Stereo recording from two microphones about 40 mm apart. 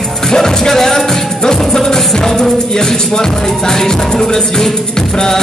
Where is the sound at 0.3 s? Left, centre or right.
Centre.